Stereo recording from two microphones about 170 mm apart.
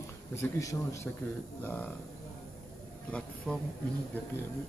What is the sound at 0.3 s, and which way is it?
Speech, 15° left (ahead or behind).